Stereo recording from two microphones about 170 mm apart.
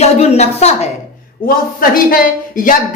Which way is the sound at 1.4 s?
55° left (ahead or behind).